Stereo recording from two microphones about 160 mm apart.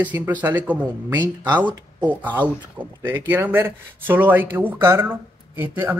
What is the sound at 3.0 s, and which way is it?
Speech, 10° right (ahead or behind).